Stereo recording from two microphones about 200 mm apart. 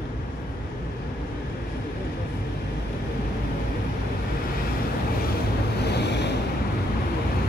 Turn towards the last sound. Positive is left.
turn(degrees=60)  # may be behind; listen again after turning